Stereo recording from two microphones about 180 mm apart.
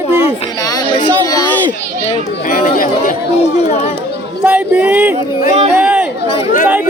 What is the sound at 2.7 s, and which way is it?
Speech, 50° left (ahead or behind).